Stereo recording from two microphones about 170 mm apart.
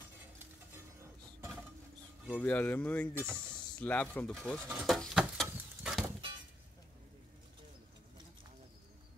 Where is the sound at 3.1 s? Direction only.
10° right (ahead or behind).